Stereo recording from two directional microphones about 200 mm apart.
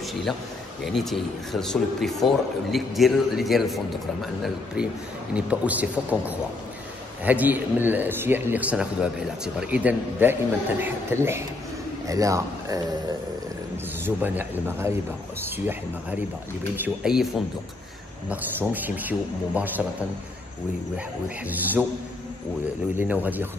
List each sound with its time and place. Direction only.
0.1 s a man's voice: centre (ahead or behind)
18.3 s speech: 10° right (ahead or behind)
21.5 s speech: 10° right (ahead or behind)
22.9 s speech: 10° right (ahead or behind)